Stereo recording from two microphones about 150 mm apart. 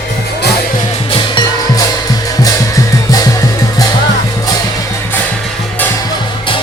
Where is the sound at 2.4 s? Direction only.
25° left (ahead or behind).